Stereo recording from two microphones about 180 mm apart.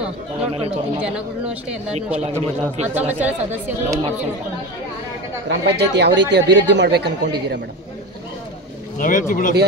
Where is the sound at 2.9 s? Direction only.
10° right (ahead or behind).